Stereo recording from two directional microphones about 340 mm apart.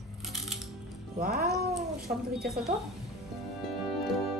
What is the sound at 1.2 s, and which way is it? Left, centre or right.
Speech, right.